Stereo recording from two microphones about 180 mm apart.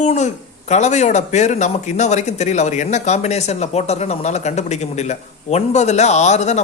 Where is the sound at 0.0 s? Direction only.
40° left (ahead or behind).